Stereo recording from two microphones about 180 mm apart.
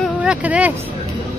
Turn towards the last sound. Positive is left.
turn(degrees=-10)  # may be behind; listen again after turning